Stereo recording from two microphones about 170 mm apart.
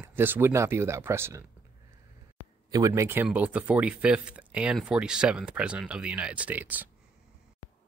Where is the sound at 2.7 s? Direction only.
20° right (ahead or behind).